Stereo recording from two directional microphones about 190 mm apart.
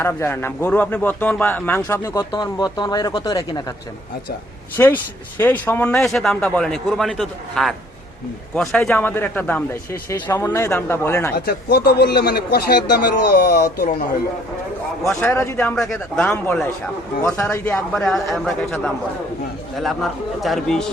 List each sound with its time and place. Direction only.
0.0 s a man's voice: 15° left (ahead or behind)
4.8 s a man's voice: 15° left (ahead or behind)
11.3 s a man's voice: 55° left (ahead or behind)
15.1 s a man's voice: 15° left (ahead or behind)